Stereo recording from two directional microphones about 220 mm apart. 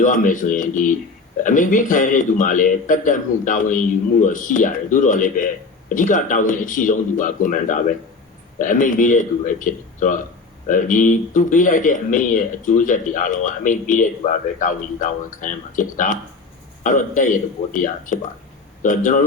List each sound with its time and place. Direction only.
0.0 s speech: 35° left (ahead or behind)